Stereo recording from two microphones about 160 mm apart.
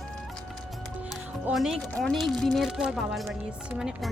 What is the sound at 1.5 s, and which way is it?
Speech, 5° right (ahead or behind).